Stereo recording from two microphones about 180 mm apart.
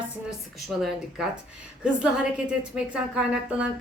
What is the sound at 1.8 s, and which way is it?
A woman's voice, 5° right (ahead or behind).